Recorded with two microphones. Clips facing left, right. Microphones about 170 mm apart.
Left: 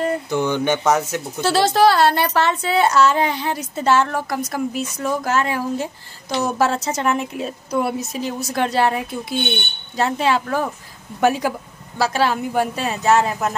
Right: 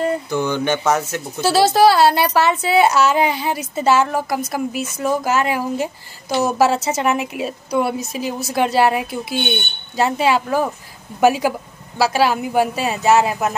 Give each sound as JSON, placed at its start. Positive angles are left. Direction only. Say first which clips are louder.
{"t": 0.3, "sound": "mantra", "louder": "even", "side_deg": 15}
{"t": 1.4, "sound": "a woman's voice", "louder": "right 2 dB", "side_deg": -5}